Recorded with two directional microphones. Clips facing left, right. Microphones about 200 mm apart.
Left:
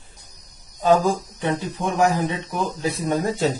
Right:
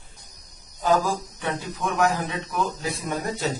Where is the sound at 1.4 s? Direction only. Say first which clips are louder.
Left 6 dB; 30° left (ahead or behind).